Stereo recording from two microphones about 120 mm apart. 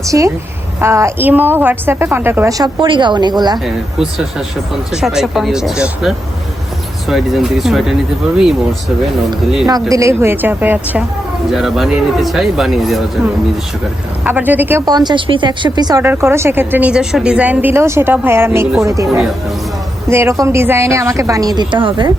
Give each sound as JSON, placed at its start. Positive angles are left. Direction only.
{"t": 0.1, "sound": "a woman's voice", "side_deg": -25}
{"t": 2.8, "sound": "speech", "side_deg": -40}
{"t": 4.7, "sound": "speech", "side_deg": -5}
{"t": 9.9, "sound": "a woman's voice", "side_deg": -25}
{"t": 11.5, "sound": "speech", "side_deg": -5}
{"t": 14.3, "sound": "a woman's voice", "side_deg": -15}
{"t": 14.8, "sound": "speech", "side_deg": -35}
{"t": 16.0, "sound": "a woman's voice", "side_deg": -20}
{"t": 20.1, "sound": "a woman's voice", "side_deg": -20}